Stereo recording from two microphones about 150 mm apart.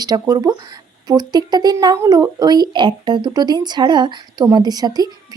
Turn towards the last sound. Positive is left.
turn(degrees=-25)  # may be behind; listen again after turning